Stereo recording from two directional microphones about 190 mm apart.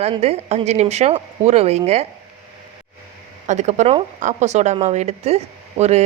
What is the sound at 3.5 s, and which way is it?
Speech, 35° right (ahead or behind).